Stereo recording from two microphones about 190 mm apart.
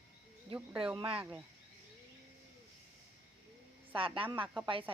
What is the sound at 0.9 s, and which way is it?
Speech, 30° right (ahead or behind).